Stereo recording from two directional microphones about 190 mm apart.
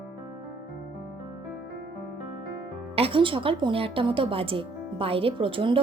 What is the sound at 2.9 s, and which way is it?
A woman's voice, 30° right (ahead or behind).